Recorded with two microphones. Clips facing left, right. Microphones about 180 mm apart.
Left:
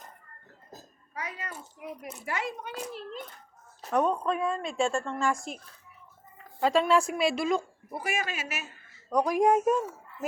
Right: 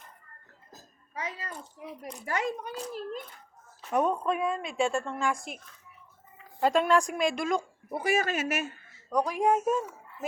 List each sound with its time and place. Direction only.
1.1 s a sound: 25° right (ahead or behind)
2.2 s speech: 40° right (ahead or behind)
3.9 s a woman's voice: 5° right (ahead or behind)
6.6 s a woman's voice: centre (ahead or behind)
7.9 s speech: 35° right (ahead or behind); by 8.6 s 50° right (ahead or behind)
9.0 s speech: 10° left (ahead or behind)
9.7 s a sound: centre (ahead or behind)